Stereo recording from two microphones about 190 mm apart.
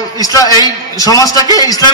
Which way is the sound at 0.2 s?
20° left (ahead or behind).